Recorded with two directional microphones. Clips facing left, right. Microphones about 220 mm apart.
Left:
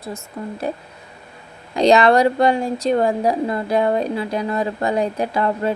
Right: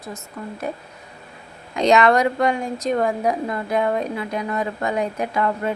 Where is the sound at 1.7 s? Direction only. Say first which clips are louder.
Left 3 dB; 35° left (ahead or behind).